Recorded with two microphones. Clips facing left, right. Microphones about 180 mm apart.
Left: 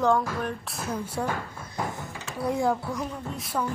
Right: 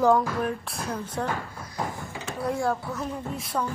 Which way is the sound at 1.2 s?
10° left (ahead or behind).